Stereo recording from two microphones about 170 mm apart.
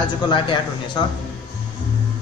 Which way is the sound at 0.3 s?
25° left (ahead or behind).